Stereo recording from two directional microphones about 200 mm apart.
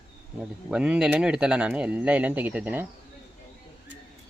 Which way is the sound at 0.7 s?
5° right (ahead or behind).